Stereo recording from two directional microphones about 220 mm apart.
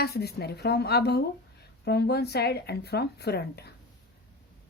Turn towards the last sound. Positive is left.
turn(degrees=45)  # may be behind; listen again after turning